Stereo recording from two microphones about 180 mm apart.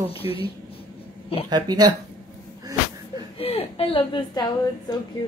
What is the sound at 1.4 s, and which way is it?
Speech, 25° right (ahead or behind).